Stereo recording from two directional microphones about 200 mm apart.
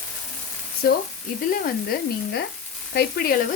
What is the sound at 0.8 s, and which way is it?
Sizzle, 55° left (ahead or behind).